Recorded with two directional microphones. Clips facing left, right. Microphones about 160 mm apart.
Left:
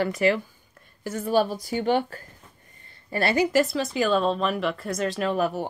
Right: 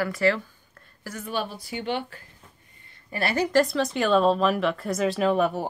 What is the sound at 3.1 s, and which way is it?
Speech, 30° left (ahead or behind).